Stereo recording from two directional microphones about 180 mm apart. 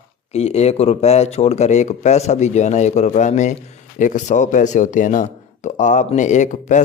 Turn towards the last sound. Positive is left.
turn(degrees=45)  # may be behind; listen again after turning